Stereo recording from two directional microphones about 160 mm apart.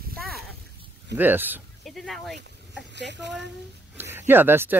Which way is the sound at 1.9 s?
Centre (ahead or behind).